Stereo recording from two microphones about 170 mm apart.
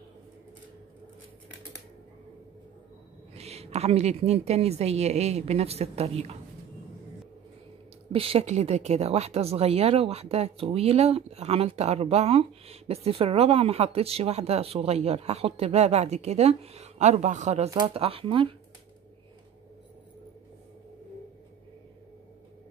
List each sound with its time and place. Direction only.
3.3 s speech: 35° right (ahead or behind)
8.1 s speech: 35° right (ahead or behind)